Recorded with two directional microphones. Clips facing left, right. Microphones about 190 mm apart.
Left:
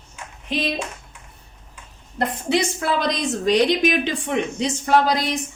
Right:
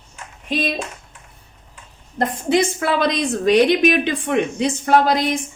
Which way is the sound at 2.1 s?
45° right (ahead or behind).